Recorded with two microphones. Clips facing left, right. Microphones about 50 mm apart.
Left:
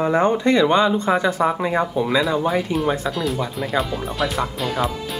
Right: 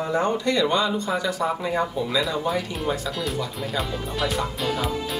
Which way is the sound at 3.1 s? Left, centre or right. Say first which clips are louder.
Left 4 dB; centre.